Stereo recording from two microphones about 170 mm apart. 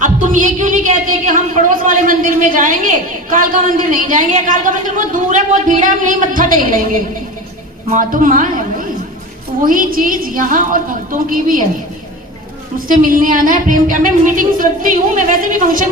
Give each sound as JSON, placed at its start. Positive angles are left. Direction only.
{"t": 0.0, "sound": "a sound", "side_deg": -50}
{"t": 1.3, "sound": "a woman's voice", "side_deg": -50}
{"t": 12.9, "sound": "a woman's voice", "side_deg": -55}